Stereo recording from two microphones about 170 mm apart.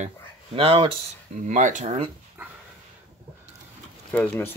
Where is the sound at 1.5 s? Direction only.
45° right (ahead or behind).